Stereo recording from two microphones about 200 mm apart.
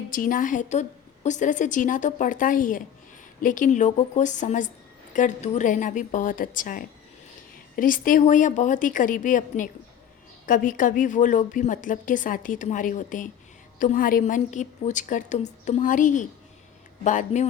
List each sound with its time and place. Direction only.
0.1 s a woman's voice: 45° left (ahead or behind)